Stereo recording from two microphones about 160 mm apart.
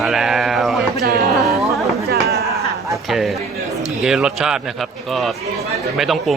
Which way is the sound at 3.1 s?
Centre (ahead or behind).